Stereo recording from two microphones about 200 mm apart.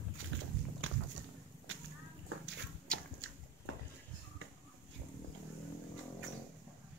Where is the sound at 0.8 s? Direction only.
80° right.